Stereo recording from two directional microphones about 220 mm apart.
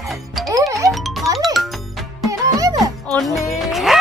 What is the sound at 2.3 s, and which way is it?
Music, 15° right (ahead or behind).